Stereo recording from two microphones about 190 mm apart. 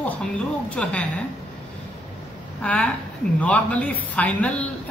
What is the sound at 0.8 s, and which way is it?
Speech, 5° left (ahead or behind).